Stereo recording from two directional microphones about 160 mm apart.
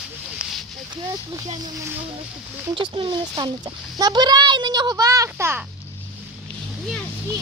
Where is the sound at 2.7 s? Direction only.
30° right (ahead or behind); by 5.6 s 15° right (ahead or behind).